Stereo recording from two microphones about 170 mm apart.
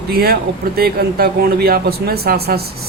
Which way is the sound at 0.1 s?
65° right (ahead or behind).